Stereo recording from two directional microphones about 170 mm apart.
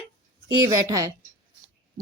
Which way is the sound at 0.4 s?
20° right (ahead or behind).